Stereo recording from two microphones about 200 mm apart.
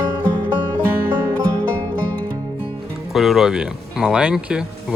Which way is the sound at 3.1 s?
Centre (ahead or behind).